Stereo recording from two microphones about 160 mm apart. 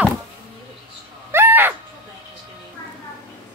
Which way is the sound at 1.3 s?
15° right (ahead or behind).